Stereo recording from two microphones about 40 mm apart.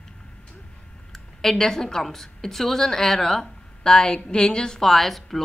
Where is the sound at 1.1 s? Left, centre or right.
Centre.